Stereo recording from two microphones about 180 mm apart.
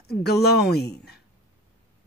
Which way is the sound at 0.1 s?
65° left (ahead or behind).